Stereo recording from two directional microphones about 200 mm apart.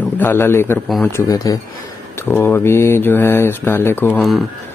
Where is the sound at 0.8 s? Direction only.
Centre (ahead or behind).